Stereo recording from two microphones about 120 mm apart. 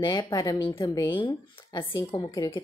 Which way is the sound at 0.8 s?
30° left (ahead or behind).